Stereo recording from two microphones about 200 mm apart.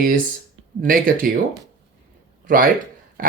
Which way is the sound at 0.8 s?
45° right (ahead or behind).